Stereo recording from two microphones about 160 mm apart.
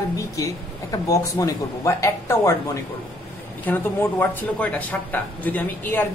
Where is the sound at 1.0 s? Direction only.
20° left (ahead or behind).